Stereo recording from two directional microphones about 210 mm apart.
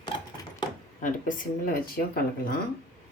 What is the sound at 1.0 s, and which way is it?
Speech, 40° left (ahead or behind).